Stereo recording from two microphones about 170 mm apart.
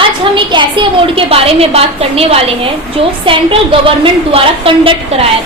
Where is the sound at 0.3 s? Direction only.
30° right (ahead or behind).